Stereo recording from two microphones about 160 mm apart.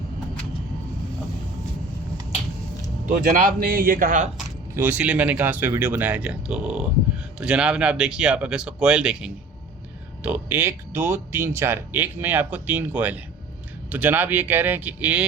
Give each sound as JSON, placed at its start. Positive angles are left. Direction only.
{"t": 3.1, "sound": "a man's voice", "side_deg": -60}
{"t": 4.7, "sound": "speech", "side_deg": -10}